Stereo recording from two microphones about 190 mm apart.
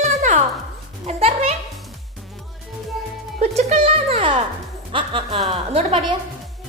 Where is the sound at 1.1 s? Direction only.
35° right (ahead or behind).